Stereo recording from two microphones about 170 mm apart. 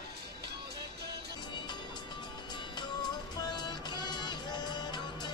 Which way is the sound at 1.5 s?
25° left (ahead or behind).